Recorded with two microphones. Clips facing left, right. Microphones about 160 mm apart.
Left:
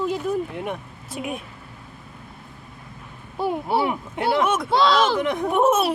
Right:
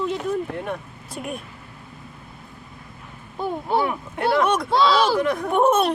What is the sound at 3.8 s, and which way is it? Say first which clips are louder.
Speech: even; 20° left (ahead or behind).